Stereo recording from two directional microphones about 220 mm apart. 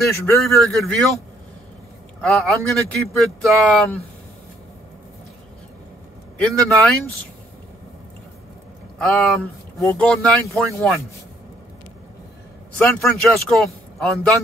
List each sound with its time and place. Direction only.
0.6 s speech: centre (ahead or behind)
2.2 s speech: centre (ahead or behind)
6.3 s speech: centre (ahead or behind)
8.9 s speech: centre (ahead or behind)
12.7 s speech: 5° left (ahead or behind)